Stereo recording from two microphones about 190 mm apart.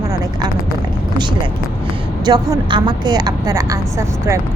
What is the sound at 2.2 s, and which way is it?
Speech, 20° right (ahead or behind).